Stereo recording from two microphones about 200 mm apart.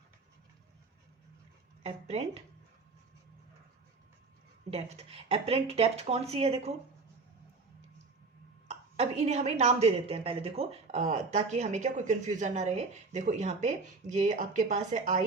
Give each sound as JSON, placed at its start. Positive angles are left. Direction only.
{"t": 1.8, "sound": "a woman's voice", "side_deg": -30}
{"t": 4.7, "sound": "a woman's voice", "side_deg": -30}
{"t": 8.6, "sound": "a woman's voice", "side_deg": -30}